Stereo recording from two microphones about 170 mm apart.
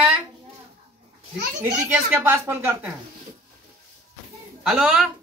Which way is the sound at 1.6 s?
10° right (ahead or behind).